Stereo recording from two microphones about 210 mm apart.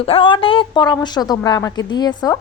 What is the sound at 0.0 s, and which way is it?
A woman's voice, 25° left (ahead or behind).